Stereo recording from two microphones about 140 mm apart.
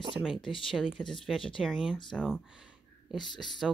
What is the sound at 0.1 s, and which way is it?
A woman's voice, 5° right (ahead or behind).